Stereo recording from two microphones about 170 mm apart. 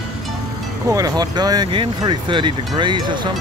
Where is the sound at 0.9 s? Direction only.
20° right (ahead or behind).